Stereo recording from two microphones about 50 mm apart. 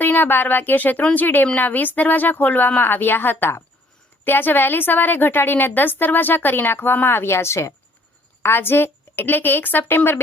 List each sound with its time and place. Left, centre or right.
0.0 s a woman's voice: left
8.4 s a woman's voice: left